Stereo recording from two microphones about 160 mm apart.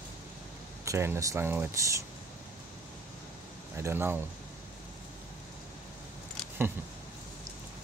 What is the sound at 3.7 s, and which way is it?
Speech, 15° right (ahead or behind).